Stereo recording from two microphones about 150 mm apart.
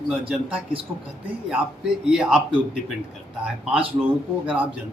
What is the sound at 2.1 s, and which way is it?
Speech, 5° right (ahead or behind).